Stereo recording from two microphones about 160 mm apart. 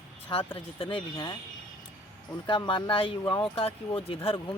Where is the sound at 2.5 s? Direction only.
30° left (ahead or behind).